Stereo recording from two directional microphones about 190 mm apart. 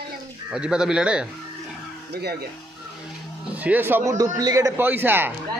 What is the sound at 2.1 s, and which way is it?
Speech, 55° right (ahead or behind).